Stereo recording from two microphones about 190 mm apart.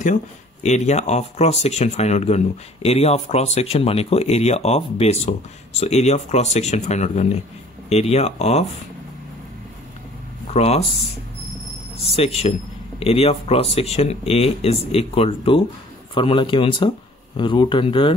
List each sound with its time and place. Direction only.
0.0 s speech: 40° left (ahead or behind)
10.5 s speech: 35° left (ahead or behind)
12.0 s speech: 30° left (ahead or behind)